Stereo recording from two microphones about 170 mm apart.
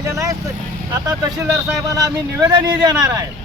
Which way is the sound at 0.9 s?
20° right (ahead or behind).